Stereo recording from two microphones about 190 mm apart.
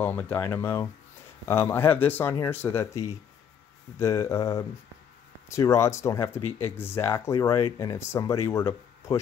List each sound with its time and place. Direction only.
0.0 s speech: 10° left (ahead or behind)